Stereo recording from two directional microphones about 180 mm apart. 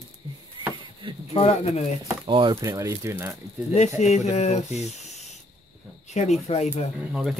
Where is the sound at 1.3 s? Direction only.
35° left (ahead or behind).